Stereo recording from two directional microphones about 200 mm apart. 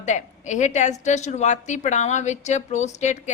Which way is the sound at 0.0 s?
35° left (ahead or behind).